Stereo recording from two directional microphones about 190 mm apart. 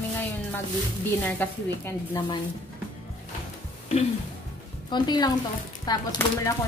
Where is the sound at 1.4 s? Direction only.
15° left (ahead or behind).